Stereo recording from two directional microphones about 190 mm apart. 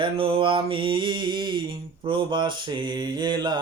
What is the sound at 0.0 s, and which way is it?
Mantra, 25° right (ahead or behind).